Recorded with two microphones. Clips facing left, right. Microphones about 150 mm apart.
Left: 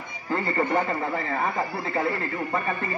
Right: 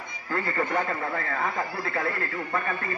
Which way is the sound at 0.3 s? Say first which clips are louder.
Left 3 dB; 15° left (ahead or behind).